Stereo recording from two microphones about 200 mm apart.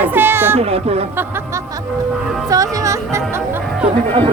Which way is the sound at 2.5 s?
15° right (ahead or behind).